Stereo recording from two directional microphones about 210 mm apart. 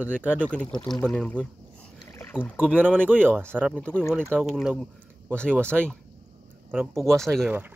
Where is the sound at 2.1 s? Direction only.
10° left (ahead or behind).